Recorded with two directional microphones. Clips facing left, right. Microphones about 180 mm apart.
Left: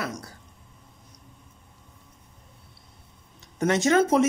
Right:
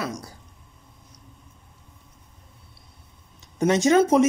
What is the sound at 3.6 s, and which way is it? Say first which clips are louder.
Speech: right 3 dB; 20° right (ahead or behind).